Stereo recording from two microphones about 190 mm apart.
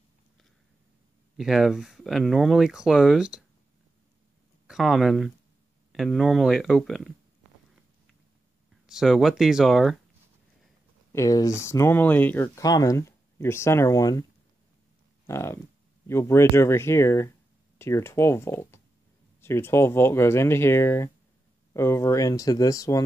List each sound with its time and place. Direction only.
1.3 s speech: centre (ahead or behind)
4.6 s speech: centre (ahead or behind)
8.8 s speech: centre (ahead or behind)
11.1 s speech: 15° left (ahead or behind)
15.2 s speech: 15° left (ahead or behind)